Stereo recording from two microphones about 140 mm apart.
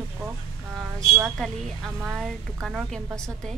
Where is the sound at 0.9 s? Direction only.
25° right (ahead or behind).